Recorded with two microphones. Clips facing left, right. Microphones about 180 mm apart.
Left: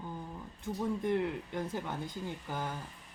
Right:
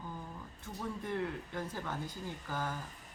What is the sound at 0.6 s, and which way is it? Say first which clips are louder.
A woman's voice: left 8 dB; 20° left (ahead or behind).